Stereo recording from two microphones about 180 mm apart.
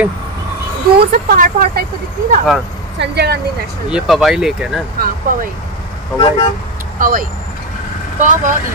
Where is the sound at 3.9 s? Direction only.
5° right (ahead or behind).